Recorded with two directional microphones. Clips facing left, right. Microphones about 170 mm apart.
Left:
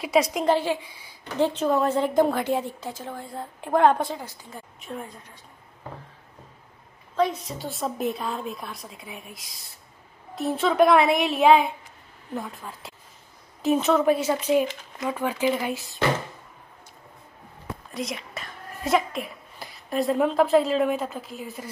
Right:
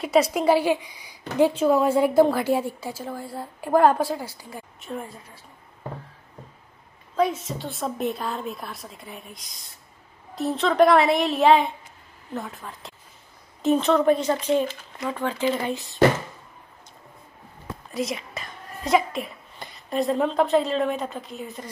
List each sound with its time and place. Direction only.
0.0 s a woman's voice: centre (ahead or behind)
7.2 s a woman's voice: 5° right (ahead or behind); by 15.7 s 10° left (ahead or behind)
17.9 s speech: centre (ahead or behind)